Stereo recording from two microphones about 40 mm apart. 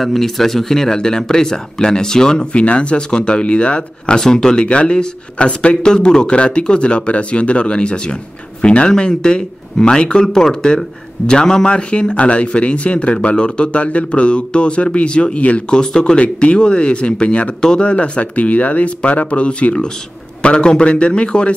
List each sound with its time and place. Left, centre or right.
0.0 s speech: centre
2.5 s speech: left
4.2 s speech: centre
4.6 s speech: left
17.6 s speech: centre
17.8 s speech: left